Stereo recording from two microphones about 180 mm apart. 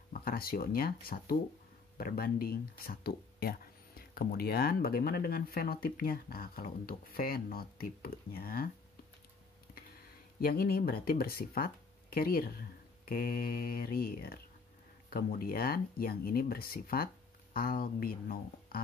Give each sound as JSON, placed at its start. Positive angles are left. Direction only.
{"t": 0.1, "sound": "speech", "side_deg": 55}
{"t": 10.4, "sound": "speech", "side_deg": 55}
{"t": 13.1, "sound": "mantra", "side_deg": 55}
{"t": 15.0, "sound": "speech", "side_deg": 55}